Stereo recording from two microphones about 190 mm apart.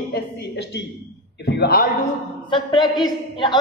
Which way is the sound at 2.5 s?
25° left (ahead or behind).